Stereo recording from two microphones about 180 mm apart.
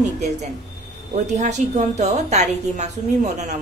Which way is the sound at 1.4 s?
40° right (ahead or behind).